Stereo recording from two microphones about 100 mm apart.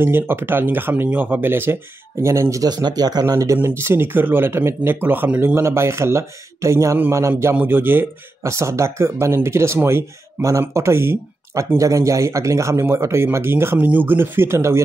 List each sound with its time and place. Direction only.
0.0 s speech: 20° right (ahead or behind); by 3.3 s 40° right (ahead or behind)
3.5 s speech: 25° right (ahead or behind)